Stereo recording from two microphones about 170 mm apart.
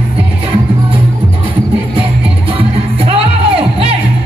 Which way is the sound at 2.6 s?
35° right (ahead or behind).